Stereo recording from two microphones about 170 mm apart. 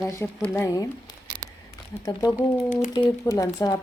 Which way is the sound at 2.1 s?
20° left (ahead or behind).